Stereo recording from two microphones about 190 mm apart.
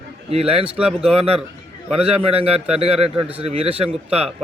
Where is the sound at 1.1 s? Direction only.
30° right (ahead or behind).